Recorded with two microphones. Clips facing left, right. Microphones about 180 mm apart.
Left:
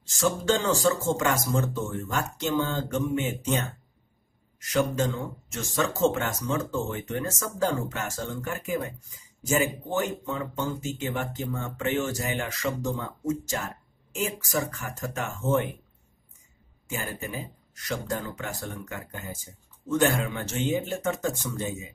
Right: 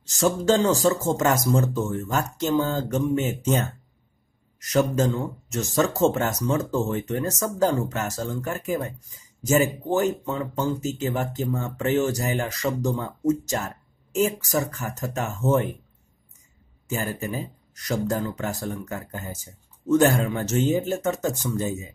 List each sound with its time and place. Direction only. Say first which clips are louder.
0.1 s speech: right 4 dB; 40° right (ahead or behind)
16.9 s speech: right 5 dB; 35° right (ahead or behind)